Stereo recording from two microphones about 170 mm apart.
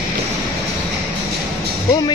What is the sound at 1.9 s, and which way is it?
Speech, 25° left (ahead or behind).